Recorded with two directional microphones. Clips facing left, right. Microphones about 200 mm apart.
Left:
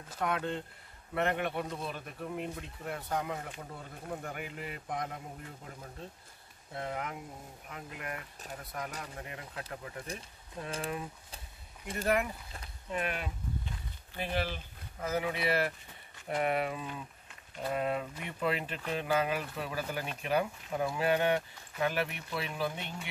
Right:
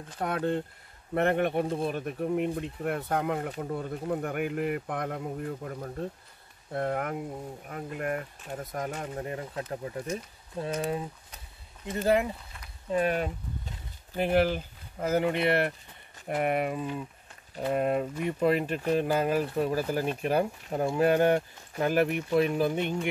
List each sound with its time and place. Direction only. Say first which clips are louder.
0.2 s speech: right 5 dB; 45° right (ahead or behind)
11.8 s speech: right 5 dB; 30° right (ahead or behind)
12.9 s speech: right 9 dB; 35° right (ahead or behind)
14.1 s speech: right 10 dB; 50° right (ahead or behind)
16.4 s speech: right 5 dB; 50° right (ahead or behind)